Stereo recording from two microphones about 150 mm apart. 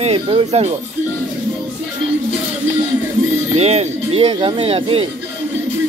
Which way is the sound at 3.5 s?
45° right (ahead or behind).